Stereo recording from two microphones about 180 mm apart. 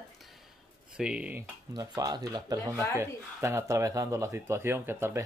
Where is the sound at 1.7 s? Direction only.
20° right (ahead or behind).